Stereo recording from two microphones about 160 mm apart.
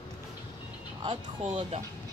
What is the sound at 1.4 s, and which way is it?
Speech, 40° right (ahead or behind).